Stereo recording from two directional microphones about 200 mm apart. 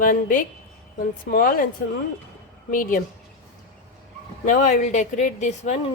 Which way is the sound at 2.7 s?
45° left (ahead or behind).